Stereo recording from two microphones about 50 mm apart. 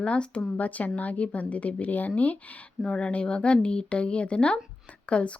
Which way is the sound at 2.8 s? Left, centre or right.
Left.